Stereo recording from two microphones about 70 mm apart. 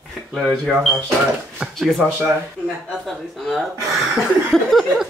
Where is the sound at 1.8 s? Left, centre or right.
Centre.